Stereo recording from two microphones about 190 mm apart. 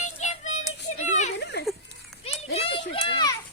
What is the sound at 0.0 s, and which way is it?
Child singing, 40° left (ahead or behind).